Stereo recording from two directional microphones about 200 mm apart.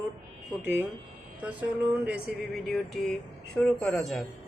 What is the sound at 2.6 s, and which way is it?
Speech, centre (ahead or behind).